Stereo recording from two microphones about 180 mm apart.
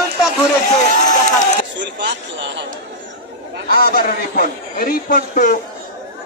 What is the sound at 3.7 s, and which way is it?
A man's voice, 55° left (ahead or behind).